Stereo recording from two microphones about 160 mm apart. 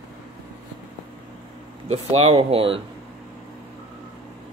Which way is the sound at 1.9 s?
40° right (ahead or behind).